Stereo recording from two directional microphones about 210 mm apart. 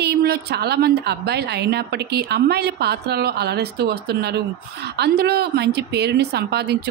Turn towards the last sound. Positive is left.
turn(degrees=-50)  # may be behind; listen again after turning